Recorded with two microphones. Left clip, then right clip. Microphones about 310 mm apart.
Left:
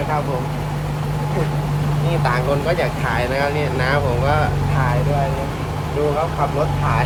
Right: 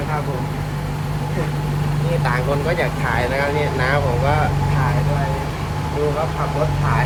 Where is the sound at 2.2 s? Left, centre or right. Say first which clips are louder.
Left 2 dB; centre.